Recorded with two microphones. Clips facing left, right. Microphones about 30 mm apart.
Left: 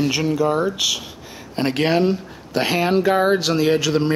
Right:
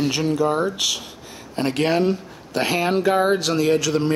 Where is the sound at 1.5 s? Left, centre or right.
Centre.